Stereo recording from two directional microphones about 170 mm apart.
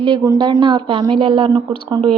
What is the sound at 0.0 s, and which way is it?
A woman's voice, 25° right (ahead or behind).